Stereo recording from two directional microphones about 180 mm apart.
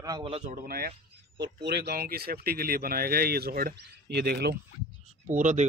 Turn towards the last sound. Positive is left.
turn(degrees=-45)  # may be behind; listen again after turning